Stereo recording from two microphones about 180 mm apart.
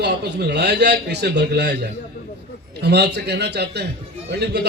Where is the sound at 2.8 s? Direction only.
65° right (ahead or behind).